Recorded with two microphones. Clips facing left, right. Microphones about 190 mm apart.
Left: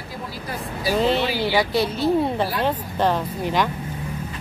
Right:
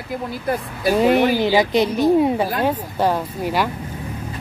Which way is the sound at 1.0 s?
10° right (ahead or behind).